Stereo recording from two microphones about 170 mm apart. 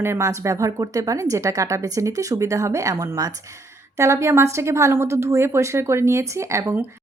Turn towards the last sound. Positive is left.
turn(degrees=-15)  # may be behind; listen again after turning